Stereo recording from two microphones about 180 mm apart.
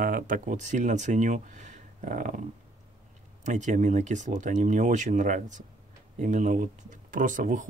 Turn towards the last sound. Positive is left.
turn(degrees=-45)  # may be behind; listen again after turning